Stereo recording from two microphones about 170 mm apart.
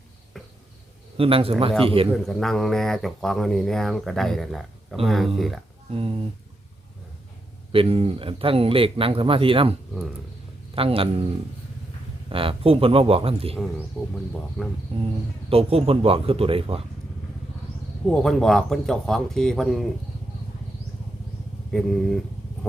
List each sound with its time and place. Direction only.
0.4 s a sound: centre (ahead or behind)
1.1 s speech: 35° right (ahead or behind)
2.1 s speech: centre (ahead or behind)
5.9 s speech: 35° right (ahead or behind)
7.7 s speech: 35° right (ahead or behind)
10.8 s speech: 35° right (ahead or behind)
12.3 s speech: 30° right (ahead or behind)
14.0 s speech: 5° right (ahead or behind)
15.4 s speech: 35° right (ahead or behind)
18.1 s speech: 5° left (ahead or behind)
21.7 s speech: centre (ahead or behind)